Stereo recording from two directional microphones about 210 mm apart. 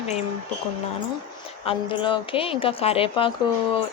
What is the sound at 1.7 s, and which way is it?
A woman's voice, 25° left (ahead or behind).